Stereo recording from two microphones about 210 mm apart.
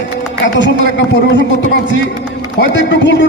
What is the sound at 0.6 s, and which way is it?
Speech, 60° left (ahead or behind).